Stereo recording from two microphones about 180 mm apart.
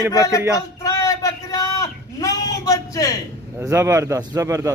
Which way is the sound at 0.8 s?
20° left (ahead or behind).